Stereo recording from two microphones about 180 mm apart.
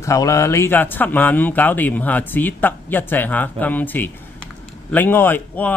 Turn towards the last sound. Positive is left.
turn(degrees=10)  # may be behind; listen again after turning